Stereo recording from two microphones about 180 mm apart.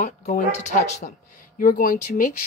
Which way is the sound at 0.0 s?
40° left (ahead or behind).